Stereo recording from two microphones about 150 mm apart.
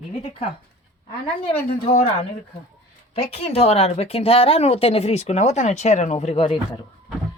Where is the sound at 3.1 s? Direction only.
40° left (ahead or behind).